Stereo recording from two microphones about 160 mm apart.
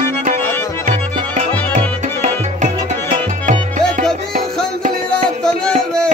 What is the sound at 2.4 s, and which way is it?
Music, 45° right (ahead or behind).